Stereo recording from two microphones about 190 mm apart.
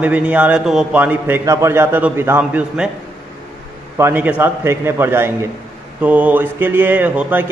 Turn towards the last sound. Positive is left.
turn(degrees=-10)  # may be behind; listen again after turning